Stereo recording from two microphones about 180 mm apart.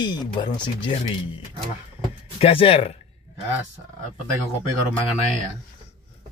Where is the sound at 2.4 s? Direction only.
30° left (ahead or behind).